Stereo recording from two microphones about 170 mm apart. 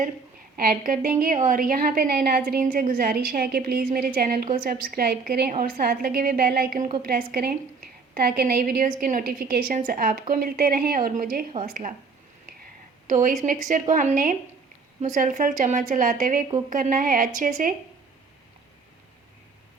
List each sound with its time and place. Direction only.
0.5 s a woman's voice: 55° right (ahead or behind)
13.1 s a woman's voice: 50° right (ahead or behind)